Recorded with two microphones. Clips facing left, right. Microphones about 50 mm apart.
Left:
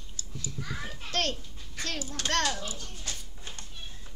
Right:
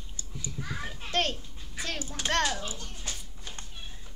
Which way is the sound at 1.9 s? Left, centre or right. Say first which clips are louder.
Right 1 dB; centre.